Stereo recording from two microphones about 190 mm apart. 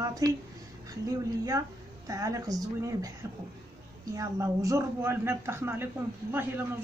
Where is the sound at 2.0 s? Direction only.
15° right (ahead or behind).